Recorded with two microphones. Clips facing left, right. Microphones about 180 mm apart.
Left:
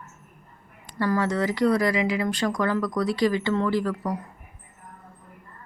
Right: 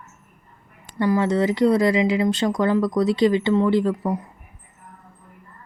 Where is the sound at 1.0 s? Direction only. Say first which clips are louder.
Right 4 dB; 20° right (ahead or behind).